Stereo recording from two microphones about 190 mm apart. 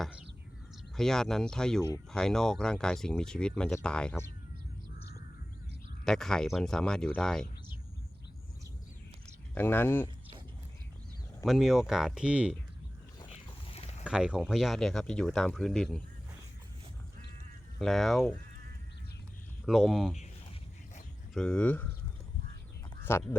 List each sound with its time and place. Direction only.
0.0 s a sound: 5° right (ahead or behind)
0.9 s speech: centre (ahead or behind)
6.1 s speech: 5° left (ahead or behind)
9.6 s speech: 10° left (ahead or behind)
11.4 s speech: centre (ahead or behind)
13.3 s a sound: 30° left (ahead or behind)
14.0 s speech: 5° right (ahead or behind)
17.7 s speech: centre (ahead or behind)
19.6 s speech: centre (ahead or behind)
21.3 s speech: 5° left (ahead or behind)
23.1 s speech: 10° left (ahead or behind)